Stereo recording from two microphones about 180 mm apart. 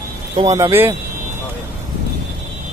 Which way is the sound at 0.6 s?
15° right (ahead or behind).